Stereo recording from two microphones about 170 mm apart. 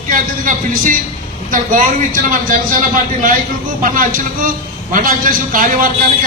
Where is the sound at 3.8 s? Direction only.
55° right (ahead or behind).